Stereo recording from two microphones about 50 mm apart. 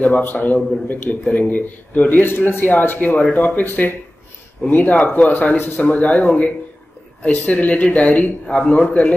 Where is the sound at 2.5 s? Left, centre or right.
Left.